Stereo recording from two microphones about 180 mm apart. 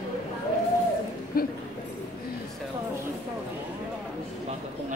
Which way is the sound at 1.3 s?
55° left (ahead or behind).